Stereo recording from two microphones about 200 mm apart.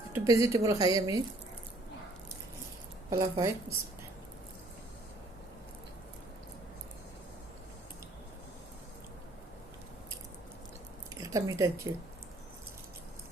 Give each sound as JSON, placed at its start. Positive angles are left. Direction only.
{"t": 0.1, "sound": "speech", "side_deg": -15}
{"t": 3.1, "sound": "speech", "side_deg": -15}
{"t": 11.1, "sound": "a sound", "side_deg": -15}